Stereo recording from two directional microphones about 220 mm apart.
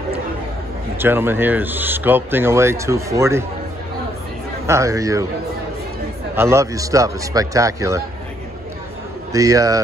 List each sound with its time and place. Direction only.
0.9 s speech: 10° right (ahead or behind)
4.6 s speech: 15° right (ahead or behind)
6.3 s speech: 10° right (ahead or behind)
9.3 s speech: 15° right (ahead or behind)